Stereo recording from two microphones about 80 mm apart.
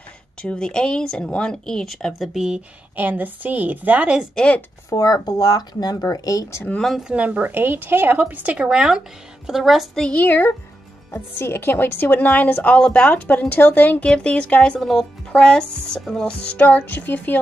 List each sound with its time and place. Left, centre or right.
0.4 s speech: centre
3.0 s a woman's voice: right
4.4 s speech: centre
4.8 s speech: left
7.0 s a woman's voice: centre
10.0 s speech: left